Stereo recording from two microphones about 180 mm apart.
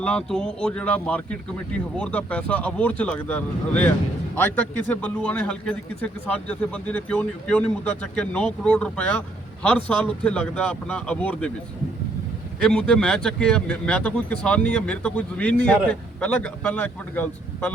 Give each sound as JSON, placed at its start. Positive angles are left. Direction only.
{"t": 0.0, "sound": "a man's voice", "side_deg": 5}
{"t": 12.6, "sound": "a man's voice", "side_deg": 5}